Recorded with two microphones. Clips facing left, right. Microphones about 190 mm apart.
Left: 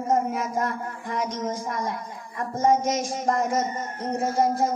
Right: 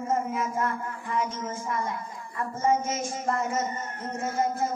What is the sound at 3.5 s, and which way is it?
Speech, 75° left (ahead or behind).